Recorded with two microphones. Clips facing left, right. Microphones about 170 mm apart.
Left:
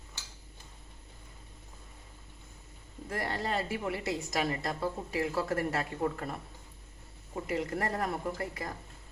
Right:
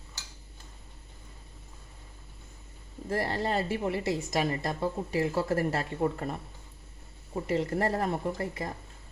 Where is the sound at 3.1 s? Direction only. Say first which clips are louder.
Right 4 dB; 30° right (ahead or behind).